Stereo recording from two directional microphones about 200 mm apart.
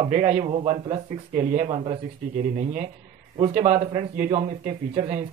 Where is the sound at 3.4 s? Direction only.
35° right (ahead or behind).